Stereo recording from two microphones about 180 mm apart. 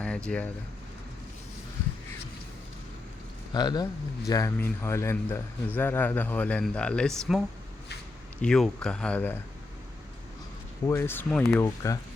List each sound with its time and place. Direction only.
0.3 s a man's voice: 10° left (ahead or behind)
3.5 s a man's voice: 25° left (ahead or behind)
10.8 s a man's voice: 15° left (ahead or behind)
11.6 s a man's voice: 20° left (ahead or behind)